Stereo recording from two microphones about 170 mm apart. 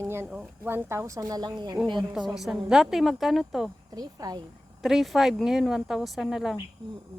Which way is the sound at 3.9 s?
20° right (ahead or behind).